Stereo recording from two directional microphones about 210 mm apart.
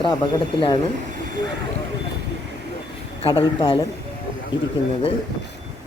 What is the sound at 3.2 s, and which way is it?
Speech, 25° left (ahead or behind).